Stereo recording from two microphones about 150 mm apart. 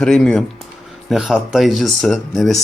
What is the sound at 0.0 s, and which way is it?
Speech, 5° left (ahead or behind).